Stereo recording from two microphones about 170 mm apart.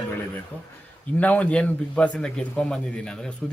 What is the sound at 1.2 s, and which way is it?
Speech, 10° left (ahead or behind).